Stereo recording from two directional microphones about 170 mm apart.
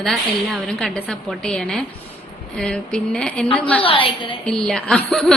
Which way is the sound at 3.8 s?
30° left (ahead or behind).